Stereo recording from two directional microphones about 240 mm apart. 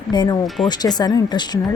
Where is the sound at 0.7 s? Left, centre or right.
Centre.